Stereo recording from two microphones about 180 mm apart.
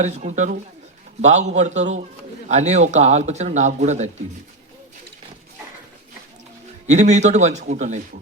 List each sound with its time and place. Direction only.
0.0 s speech: 40° right (ahead or behind)
6.8 s speech: 40° right (ahead or behind)